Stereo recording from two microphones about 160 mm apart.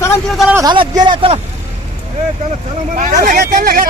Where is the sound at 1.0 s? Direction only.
30° right (ahead or behind).